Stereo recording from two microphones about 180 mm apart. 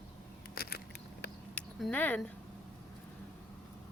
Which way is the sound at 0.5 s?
60° left (ahead or behind).